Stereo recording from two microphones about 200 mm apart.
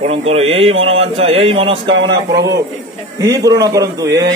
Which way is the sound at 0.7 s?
80° right.